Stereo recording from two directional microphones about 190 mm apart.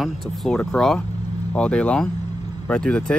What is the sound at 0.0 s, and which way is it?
Speech, centre (ahead or behind).